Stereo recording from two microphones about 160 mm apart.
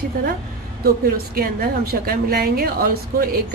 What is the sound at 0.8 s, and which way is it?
A woman's voice, 70° right (ahead or behind).